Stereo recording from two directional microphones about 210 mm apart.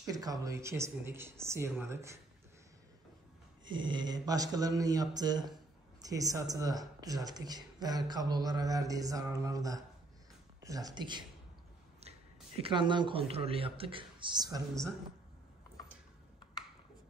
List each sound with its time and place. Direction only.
0.0 s speech: 15° right (ahead or behind)
3.6 s speech: 20° right (ahead or behind)
12.6 s speech: 20° right (ahead or behind)